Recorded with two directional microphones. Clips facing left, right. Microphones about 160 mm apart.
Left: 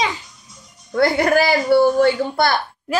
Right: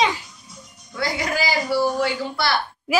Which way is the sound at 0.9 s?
55° left (ahead or behind).